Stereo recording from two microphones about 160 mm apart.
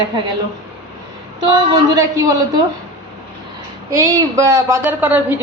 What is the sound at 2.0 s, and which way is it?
Speech, 20° right (ahead or behind).